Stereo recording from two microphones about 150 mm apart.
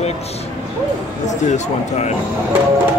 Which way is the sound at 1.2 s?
50° left (ahead or behind).